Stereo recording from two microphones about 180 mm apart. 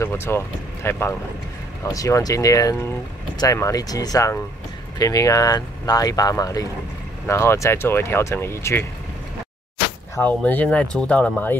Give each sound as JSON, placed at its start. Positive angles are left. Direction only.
{"t": 0.0, "sound": "speech", "side_deg": 15}
{"t": 10.1, "sound": "speech", "side_deg": 10}